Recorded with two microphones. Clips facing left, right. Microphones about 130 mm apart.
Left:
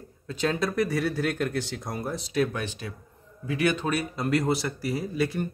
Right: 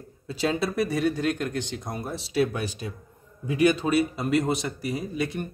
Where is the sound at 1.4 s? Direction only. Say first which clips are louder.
Left 1 dB; 20° right (ahead or behind).